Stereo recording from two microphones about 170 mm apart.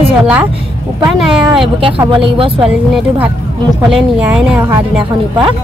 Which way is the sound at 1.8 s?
30° right (ahead or behind).